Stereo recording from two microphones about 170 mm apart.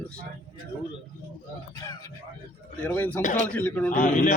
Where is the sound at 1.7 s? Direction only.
20° left (ahead or behind).